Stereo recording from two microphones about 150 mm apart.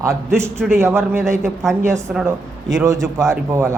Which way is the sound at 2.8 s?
20° right (ahead or behind).